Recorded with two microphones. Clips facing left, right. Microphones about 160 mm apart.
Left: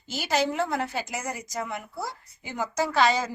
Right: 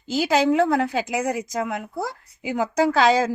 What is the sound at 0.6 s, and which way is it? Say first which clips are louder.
A woman's voice: right 8 dB; 90° right.